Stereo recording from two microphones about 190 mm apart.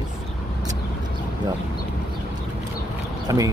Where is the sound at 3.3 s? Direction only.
20° right (ahead or behind).